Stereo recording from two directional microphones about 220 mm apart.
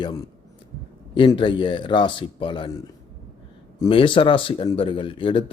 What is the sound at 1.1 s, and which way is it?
Speech, 20° left (ahead or behind).